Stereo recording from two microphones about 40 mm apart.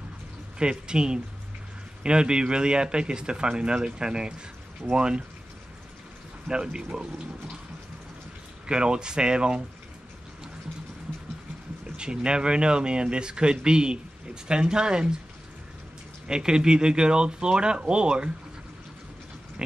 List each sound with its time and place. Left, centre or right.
0.6 s speech: right
6.4 s speech: right
8.6 s speech: right
12.0 s speech: right
16.3 s speech: centre